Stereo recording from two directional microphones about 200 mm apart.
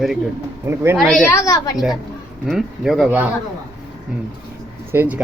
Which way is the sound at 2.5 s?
Centre (ahead or behind).